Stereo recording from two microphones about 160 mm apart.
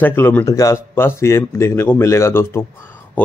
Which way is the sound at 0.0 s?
15° left (ahead or behind).